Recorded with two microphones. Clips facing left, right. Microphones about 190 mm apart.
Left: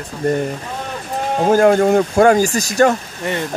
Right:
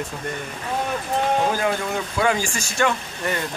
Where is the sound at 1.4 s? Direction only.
50° left (ahead or behind).